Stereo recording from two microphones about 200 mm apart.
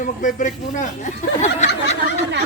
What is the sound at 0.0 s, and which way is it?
A woman's voice, 40° left (ahead or behind).